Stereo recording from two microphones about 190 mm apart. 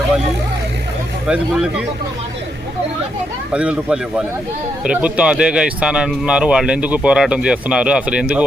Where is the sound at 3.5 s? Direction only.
5° right (ahead or behind).